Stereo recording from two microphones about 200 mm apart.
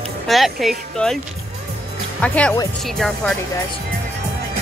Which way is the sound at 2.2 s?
5° left (ahead or behind).